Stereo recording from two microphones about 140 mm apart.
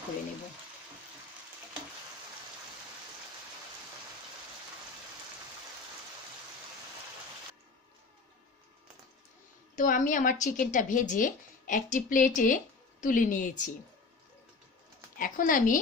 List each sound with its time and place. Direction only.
9.8 s a woman's voice: 65° left (ahead or behind)
15.1 s speech: 75° left (ahead or behind)